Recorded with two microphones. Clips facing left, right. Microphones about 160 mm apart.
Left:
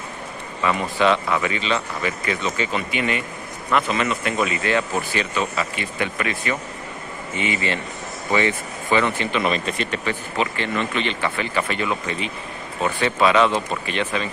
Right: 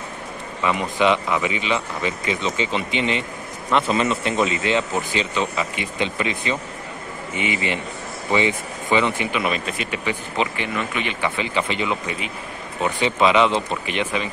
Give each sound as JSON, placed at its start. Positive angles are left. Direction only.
{"t": 0.6, "sound": "speech", "side_deg": -15}